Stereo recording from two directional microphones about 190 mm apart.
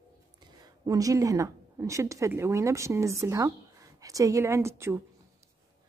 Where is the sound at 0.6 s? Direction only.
20° right (ahead or behind).